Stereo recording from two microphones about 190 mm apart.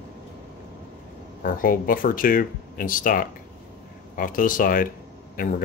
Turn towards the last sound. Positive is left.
turn(degrees=45)  # may be behind; listen again after turning